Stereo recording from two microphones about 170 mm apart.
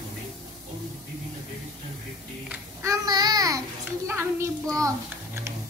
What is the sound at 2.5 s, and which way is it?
Child singing, 15° right (ahead or behind).